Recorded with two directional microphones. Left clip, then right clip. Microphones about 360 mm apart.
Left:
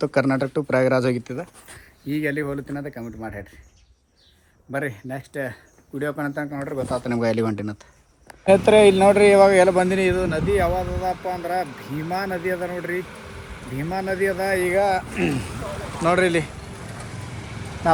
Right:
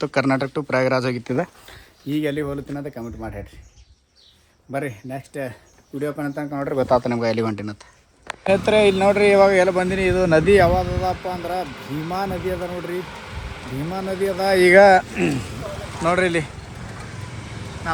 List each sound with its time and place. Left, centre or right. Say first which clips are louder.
0.0 s speech: even; centre
4.7 s speech: even; centre
6.6 s speech: right 11 dB; centre
7.1 s speech: right 1 dB; centre
10.4 s speech: right 4 dB; right
11.2 s speech: left 1 dB; centre
14.4 s speech: right 11 dB; right
15.1 s speech: right 1 dB; centre